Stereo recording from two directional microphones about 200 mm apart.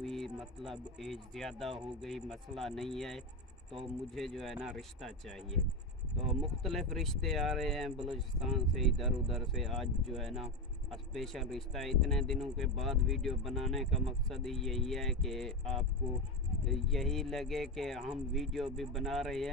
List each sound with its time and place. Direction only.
0.0 s speech: centre (ahead or behind)